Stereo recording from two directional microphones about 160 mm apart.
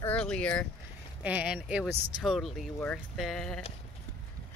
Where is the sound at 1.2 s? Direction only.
5° right (ahead or behind).